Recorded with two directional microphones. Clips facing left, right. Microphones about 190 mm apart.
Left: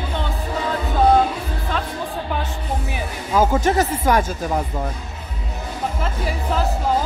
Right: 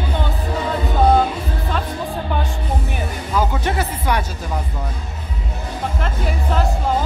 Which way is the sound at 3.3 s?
45° left (ahead or behind).